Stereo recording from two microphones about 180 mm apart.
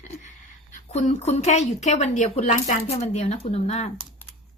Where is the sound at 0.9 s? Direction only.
40° left (ahead or behind).